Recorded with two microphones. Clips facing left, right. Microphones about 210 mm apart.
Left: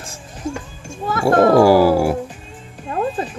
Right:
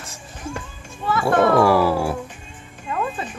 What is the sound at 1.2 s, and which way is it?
Speech, 35° left (ahead or behind).